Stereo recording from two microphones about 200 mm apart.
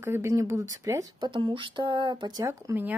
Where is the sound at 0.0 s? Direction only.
15° right (ahead or behind).